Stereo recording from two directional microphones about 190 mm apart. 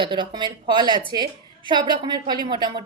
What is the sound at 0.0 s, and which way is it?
A woman's voice, 25° right (ahead or behind).